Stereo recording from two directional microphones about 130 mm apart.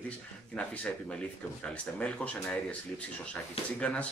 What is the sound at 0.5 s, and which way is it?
Speech, 10° left (ahead or behind).